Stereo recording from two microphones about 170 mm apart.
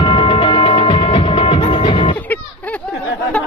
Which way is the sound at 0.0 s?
30° left (ahead or behind).